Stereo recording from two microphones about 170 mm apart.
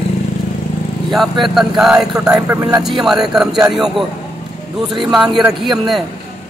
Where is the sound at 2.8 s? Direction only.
Centre (ahead or behind).